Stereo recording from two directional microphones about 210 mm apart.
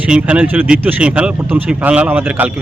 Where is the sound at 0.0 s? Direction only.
5° right (ahead or behind).